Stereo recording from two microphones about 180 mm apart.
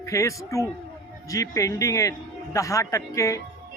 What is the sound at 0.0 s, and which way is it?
Speech, 15° left (ahead or behind).